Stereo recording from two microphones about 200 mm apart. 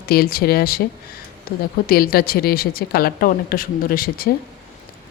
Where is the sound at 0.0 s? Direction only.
50° left (ahead or behind).